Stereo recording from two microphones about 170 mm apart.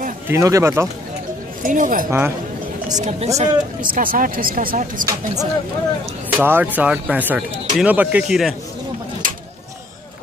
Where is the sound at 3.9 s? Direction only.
55° right (ahead or behind).